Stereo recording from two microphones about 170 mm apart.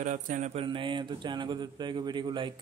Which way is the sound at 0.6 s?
30° right (ahead or behind).